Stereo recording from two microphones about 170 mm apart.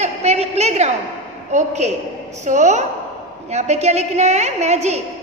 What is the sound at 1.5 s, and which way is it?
A woman's voice, 45° right (ahead or behind).